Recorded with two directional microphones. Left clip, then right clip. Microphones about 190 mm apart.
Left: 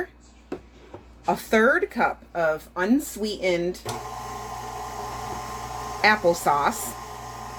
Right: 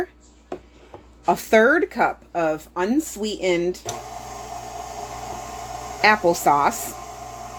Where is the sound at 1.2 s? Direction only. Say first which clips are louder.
Right 4 dB; 45° right (ahead or behind).